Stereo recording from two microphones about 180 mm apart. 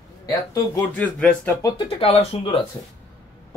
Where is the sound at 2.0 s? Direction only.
35° left (ahead or behind).